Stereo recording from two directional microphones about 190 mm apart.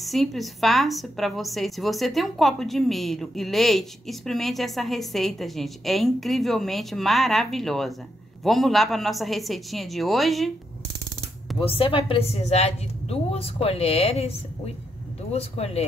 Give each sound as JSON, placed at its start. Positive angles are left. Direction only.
{"t": 0.0, "sound": "a woman's voice", "side_deg": 0}
{"t": 11.6, "sound": "a woman's voice", "side_deg": 30}
{"t": 15.3, "sound": "a woman's voice", "side_deg": 35}